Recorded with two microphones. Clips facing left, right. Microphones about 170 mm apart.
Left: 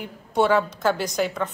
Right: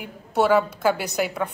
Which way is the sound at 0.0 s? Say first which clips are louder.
Even; 5° right (ahead or behind).